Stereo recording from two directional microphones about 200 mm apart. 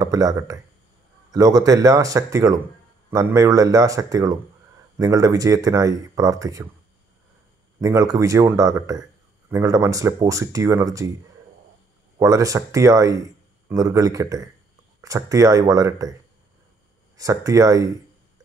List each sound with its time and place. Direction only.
0.0 s speech: 20° right (ahead or behind)
7.8 s speech: 15° right (ahead or behind)
12.2 s speech: 15° right (ahead or behind)
17.2 s speech: 15° right (ahead or behind)